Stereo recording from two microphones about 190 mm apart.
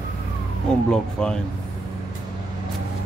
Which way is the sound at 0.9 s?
5° left (ahead or behind).